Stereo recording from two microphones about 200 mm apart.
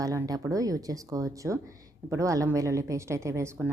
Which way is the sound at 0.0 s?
15° right (ahead or behind).